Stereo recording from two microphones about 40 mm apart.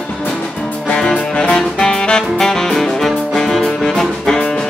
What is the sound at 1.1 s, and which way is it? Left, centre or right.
Music, left.